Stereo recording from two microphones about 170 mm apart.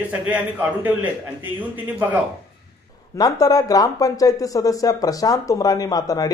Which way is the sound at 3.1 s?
20° left (ahead or behind).